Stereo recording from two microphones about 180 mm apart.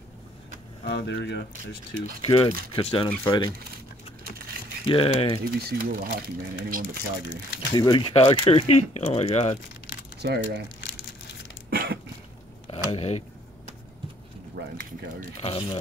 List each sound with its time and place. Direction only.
0.8 s speech: 75° left (ahead or behind)
2.2 s speech: 30° left (ahead or behind)
4.8 s speech: 30° left (ahead or behind)
5.4 s speech: 55° right (ahead or behind)
7.7 s speech: 25° left (ahead or behind)
10.2 s speech: 65° right (ahead or behind)
11.7 s a sound: 60° right (ahead or behind)
12.7 s speech: 35° left (ahead or behind)
14.8 s speech: 50° right (ahead or behind)
15.4 s speech: 30° left (ahead or behind)